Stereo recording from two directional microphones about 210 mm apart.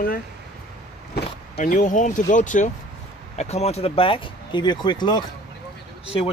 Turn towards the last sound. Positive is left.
turn(degrees=25)  # may be behind; listen again after turning